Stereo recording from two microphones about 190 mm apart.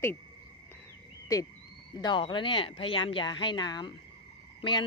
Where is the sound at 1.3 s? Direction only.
15° left (ahead or behind).